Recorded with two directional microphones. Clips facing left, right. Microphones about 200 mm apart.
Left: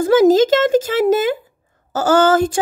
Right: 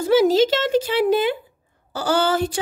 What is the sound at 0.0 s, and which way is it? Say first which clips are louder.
A woman's voice: left 4 dB; 45° left (ahead or behind).